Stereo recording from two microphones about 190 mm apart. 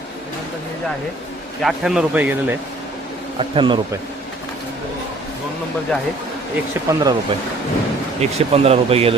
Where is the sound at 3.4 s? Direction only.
25° right (ahead or behind).